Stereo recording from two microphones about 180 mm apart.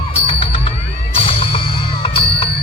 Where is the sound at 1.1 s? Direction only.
30° left (ahead or behind).